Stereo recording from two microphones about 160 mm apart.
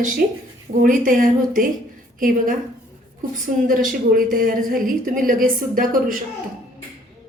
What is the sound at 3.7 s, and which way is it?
A woman's voice, 60° right (ahead or behind).